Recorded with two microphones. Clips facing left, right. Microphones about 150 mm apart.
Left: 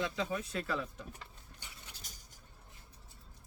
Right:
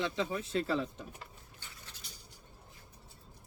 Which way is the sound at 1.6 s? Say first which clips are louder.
Even; 15° left (ahead or behind).